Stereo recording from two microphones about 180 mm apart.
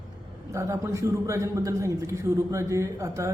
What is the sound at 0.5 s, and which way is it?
A man's voice, 15° right (ahead or behind).